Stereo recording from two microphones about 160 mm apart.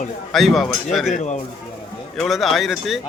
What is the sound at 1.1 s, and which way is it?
Speech, 50° left (ahead or behind).